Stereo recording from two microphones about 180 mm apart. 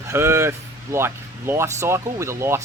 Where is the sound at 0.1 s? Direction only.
15° right (ahead or behind).